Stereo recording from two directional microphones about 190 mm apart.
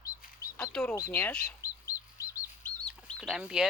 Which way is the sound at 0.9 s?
15° left (ahead or behind).